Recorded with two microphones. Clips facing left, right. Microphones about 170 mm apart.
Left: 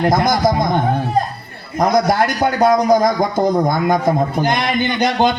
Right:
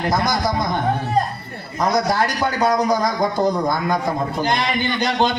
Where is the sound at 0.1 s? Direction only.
50° left (ahead or behind).